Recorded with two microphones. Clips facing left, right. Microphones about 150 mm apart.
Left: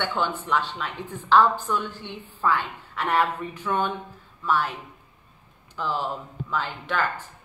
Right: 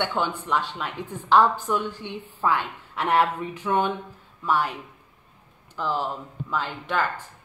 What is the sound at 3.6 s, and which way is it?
A woman's voice, 25° right (ahead or behind).